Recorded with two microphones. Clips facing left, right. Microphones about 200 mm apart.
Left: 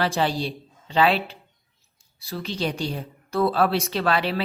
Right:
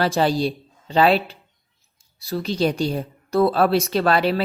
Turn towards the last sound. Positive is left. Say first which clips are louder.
# right 5 dB
turn(degrees=-40)  # may be behind; listen again after turning